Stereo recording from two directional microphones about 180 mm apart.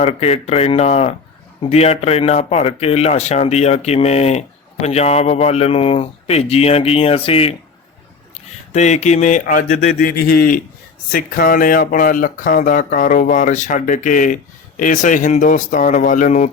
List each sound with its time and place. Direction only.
0.0 s speech: 35° left (ahead or behind)
8.7 s speech: 40° left (ahead or behind)